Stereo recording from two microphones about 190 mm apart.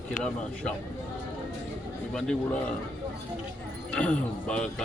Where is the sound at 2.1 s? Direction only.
5° left (ahead or behind).